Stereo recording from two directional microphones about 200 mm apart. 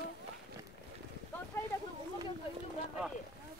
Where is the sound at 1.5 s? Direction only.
10° left (ahead or behind).